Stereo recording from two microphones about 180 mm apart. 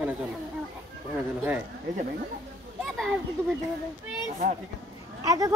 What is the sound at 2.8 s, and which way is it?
Speech, centre (ahead or behind).